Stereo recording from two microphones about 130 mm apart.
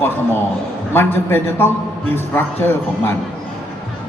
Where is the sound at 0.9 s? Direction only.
15° left (ahead or behind).